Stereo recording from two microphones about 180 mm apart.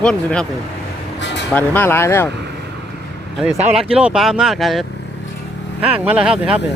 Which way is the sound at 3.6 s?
5° right (ahead or behind).